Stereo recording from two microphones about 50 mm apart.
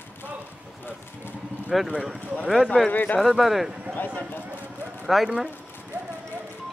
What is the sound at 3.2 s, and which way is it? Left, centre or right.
Speech, centre.